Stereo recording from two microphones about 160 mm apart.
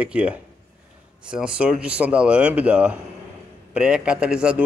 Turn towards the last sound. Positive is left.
turn(degrees=-5)  # may be behind; listen again after turning